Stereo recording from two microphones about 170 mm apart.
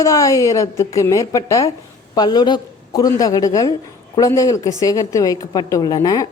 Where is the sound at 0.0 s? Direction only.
20° left (ahead or behind).